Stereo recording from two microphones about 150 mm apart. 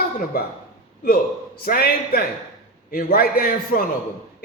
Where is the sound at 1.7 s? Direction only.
90° left.